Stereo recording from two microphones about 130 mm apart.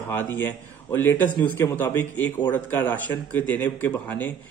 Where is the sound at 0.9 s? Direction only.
15° left (ahead or behind).